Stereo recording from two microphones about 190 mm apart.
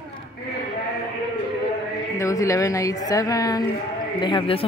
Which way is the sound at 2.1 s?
15° left (ahead or behind).